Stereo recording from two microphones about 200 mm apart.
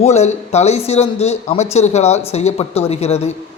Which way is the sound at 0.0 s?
35° left (ahead or behind).